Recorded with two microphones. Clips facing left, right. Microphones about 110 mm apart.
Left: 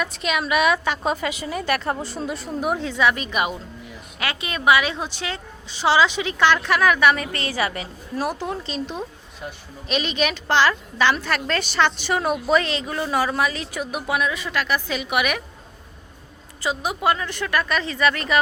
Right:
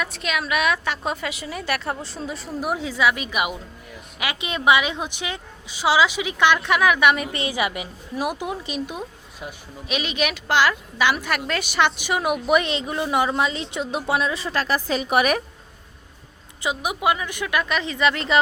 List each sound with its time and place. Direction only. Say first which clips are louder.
0.0 s a woman's voice: left 2 dB; centre (ahead or behind); by 15.4 s 35° right (ahead or behind)
16.6 s a woman's voice: left 1 dB; 15° right (ahead or behind)